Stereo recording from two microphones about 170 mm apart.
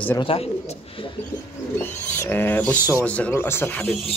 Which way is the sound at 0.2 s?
35° left (ahead or behind).